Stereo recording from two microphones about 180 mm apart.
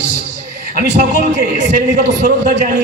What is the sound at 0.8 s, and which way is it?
A man's voice, 45° right (ahead or behind).